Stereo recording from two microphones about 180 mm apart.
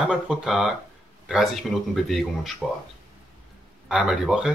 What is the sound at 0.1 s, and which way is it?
Speech, 5° right (ahead or behind).